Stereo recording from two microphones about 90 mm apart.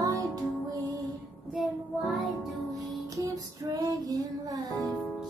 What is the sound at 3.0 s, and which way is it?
Music, 40° right (ahead or behind).